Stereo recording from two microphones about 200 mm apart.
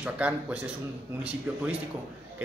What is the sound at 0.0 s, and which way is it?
Speech, 5° right (ahead or behind).